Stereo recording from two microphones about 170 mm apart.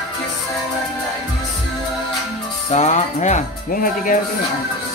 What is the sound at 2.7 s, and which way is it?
Speech, 45° left (ahead or behind).